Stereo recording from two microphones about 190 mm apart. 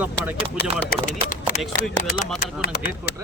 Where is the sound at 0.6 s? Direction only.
60° left (ahead or behind).